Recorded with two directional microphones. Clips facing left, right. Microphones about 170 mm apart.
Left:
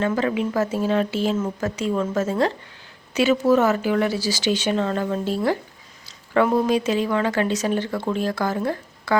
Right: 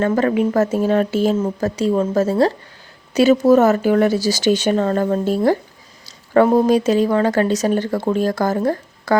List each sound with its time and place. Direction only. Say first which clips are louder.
0.0 s speech: right 5 dB; 45° right (ahead or behind)